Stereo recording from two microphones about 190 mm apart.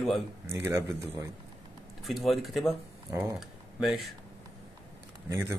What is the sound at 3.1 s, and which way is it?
Speech, 15° right (ahead or behind).